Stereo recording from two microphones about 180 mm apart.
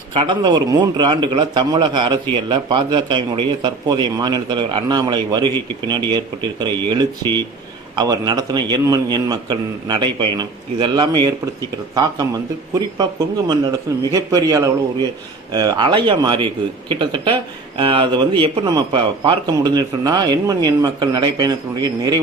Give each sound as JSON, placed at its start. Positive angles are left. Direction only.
{"t": 0.1, "sound": "speech", "side_deg": -25}